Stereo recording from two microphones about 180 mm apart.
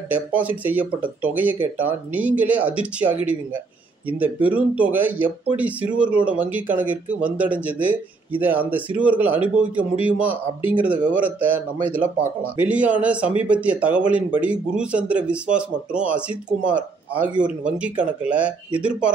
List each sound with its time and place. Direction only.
0.1 s a man's voice: 10° right (ahead or behind)
4.2 s a man's voice: 10° right (ahead or behind)